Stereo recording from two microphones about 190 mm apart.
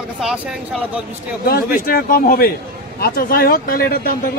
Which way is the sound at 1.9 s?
50° left (ahead or behind).